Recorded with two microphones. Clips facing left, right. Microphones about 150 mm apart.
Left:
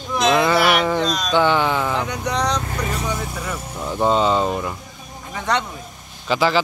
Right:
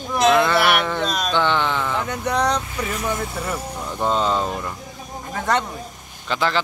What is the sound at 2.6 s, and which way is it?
Vehicle, 45° left (ahead or behind).